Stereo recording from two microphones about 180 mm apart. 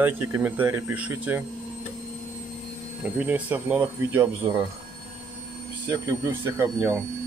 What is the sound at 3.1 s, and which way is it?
Speech, 10° right (ahead or behind).